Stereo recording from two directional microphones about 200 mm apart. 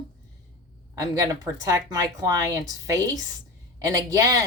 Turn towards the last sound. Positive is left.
turn(degrees=-15)  # may be behind; listen again after turning